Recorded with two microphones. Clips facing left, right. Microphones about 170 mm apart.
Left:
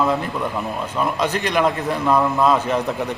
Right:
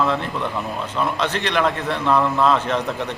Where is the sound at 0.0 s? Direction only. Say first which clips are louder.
Left 1 dB; 10° left (ahead or behind).